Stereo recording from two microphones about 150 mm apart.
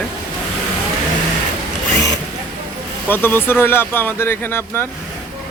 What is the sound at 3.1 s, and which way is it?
Speech, 15° left (ahead or behind).